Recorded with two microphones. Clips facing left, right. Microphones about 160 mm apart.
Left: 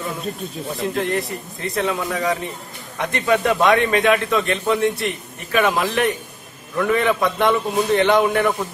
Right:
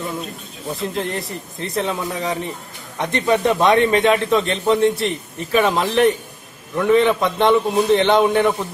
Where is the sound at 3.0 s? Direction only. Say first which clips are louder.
Right 1 dB; 20° right (ahead or behind).